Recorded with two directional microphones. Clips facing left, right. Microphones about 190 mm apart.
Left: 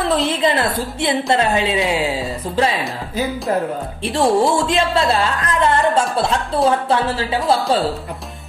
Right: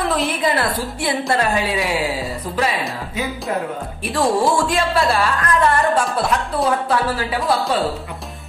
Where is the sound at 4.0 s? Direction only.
25° left (ahead or behind).